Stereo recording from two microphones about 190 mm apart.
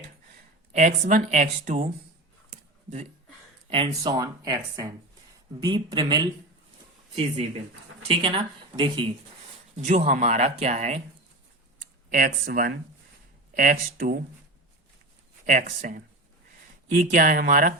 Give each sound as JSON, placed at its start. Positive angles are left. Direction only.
{"t": 0.7, "sound": "speech", "side_deg": -40}
{"t": 2.5, "sound": "a sound", "side_deg": -40}
{"t": 3.7, "sound": "speech", "side_deg": -25}
{"t": 8.0, "sound": "speech", "side_deg": -30}
{"t": 9.7, "sound": "speech", "side_deg": -35}
{"t": 12.1, "sound": "speech", "side_deg": -50}
{"t": 15.4, "sound": "speech", "side_deg": -45}